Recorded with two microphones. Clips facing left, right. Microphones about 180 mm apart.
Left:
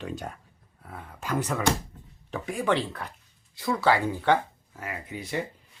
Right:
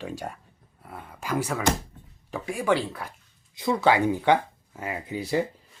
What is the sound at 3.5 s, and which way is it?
Speech, 20° right (ahead or behind).